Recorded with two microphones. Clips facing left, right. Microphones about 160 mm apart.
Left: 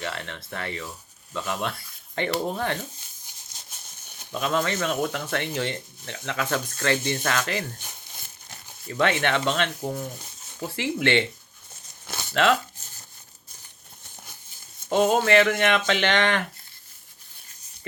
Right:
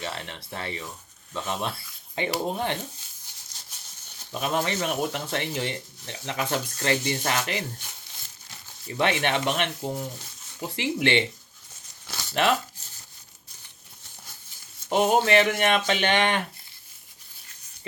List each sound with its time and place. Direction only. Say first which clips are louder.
0.0 s speech: left 1 dB; 20° right (ahead or behind)
4.3 s speech: left 1 dB; 20° right (ahead or behind)
8.9 s speech: left 1 dB; 20° right (ahead or behind)
12.3 s speech: left 2 dB; 20° right (ahead or behind)
14.8 s speech: left 1 dB; 20° right (ahead or behind)